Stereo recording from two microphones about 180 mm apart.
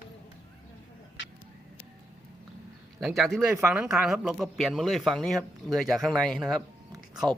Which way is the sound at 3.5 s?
15° right (ahead or behind).